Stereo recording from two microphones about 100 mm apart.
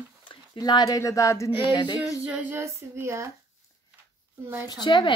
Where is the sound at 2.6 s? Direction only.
30° right (ahead or behind).